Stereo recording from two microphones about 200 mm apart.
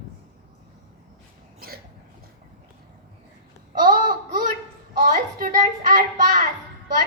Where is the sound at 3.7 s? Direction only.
45° right (ahead or behind).